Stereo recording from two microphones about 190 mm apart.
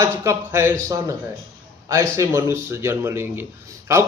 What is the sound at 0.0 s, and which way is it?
Mantra, 15° right (ahead or behind).